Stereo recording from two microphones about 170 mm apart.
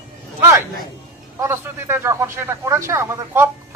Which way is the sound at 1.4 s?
15° right (ahead or behind).